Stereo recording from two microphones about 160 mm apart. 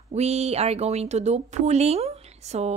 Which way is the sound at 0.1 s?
40° right (ahead or behind).